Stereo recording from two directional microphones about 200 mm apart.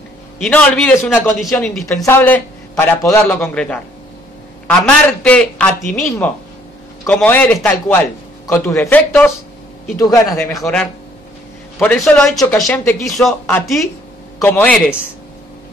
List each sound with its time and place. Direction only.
0.4 s a man's voice: 5° left (ahead or behind)
2.0 s a man's voice: 10° left (ahead or behind)
3.3 s a man's voice: 5° left (ahead or behind)
10.5 s a man's voice: 5° left (ahead or behind)